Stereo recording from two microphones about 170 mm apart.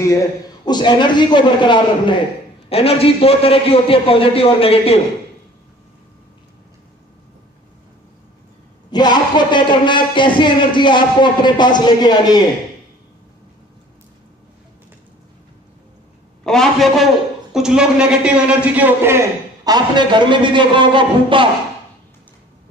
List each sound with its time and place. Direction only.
0.7 s a man's voice: 25° left (ahead or behind)
8.9 s a man's voice: 25° left (ahead or behind)
16.4 s a man's voice: centre (ahead or behind); by 21.5 s 30° right (ahead or behind)